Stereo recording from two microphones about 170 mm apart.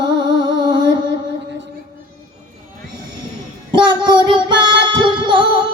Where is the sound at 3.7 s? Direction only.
25° right (ahead or behind).